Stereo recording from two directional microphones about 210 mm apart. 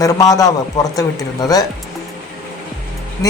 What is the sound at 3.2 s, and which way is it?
Speech, 15° left (ahead or behind).